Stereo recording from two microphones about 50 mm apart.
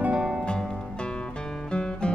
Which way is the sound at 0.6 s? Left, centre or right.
Centre.